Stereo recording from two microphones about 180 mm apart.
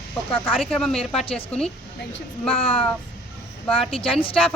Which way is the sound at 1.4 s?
5° left (ahead or behind).